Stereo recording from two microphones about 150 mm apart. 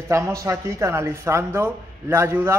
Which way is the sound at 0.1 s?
20° right (ahead or behind).